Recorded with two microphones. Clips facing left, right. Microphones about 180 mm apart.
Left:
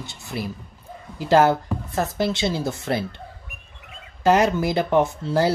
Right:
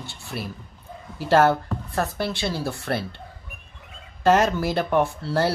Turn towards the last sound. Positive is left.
turn(degrees=15)  # may be behind; listen again after turning